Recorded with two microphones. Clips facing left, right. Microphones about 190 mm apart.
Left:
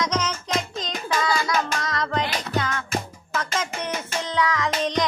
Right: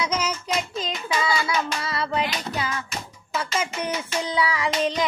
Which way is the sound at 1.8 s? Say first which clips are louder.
Even; 10° right (ahead or behind).